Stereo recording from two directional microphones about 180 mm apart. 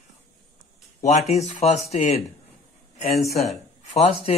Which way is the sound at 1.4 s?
40° left (ahead or behind).